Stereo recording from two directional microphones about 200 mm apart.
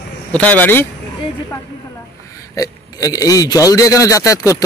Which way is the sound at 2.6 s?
15° left (ahead or behind).